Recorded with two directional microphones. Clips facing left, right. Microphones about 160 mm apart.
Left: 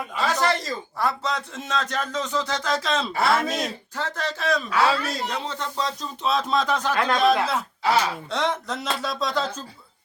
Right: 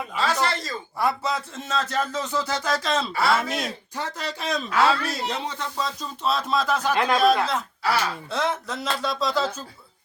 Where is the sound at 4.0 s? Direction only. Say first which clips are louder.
Left 2 dB; 10° right (ahead or behind).